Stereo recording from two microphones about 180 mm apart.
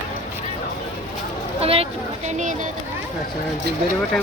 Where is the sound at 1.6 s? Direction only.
35° right (ahead or behind).